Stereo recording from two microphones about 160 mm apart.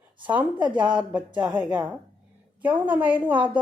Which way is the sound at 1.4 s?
30° right (ahead or behind).